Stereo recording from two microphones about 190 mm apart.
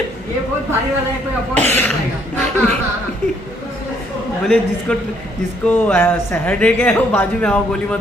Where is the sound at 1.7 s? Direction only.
10° left (ahead or behind).